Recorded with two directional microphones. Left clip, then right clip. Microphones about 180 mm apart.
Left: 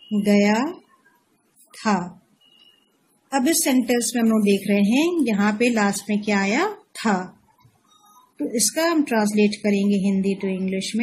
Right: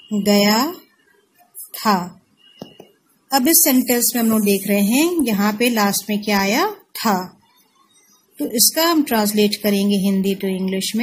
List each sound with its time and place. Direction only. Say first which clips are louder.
0.2 s a woman's voice: right 4 dB; 20° right (ahead or behind)
1.8 s a woman's voice: right 5 dB; 20° right (ahead or behind)
3.3 s a woman's voice: right 4 dB; 20° right (ahead or behind)
8.4 s a woman's voice: right 4 dB; 20° right (ahead or behind)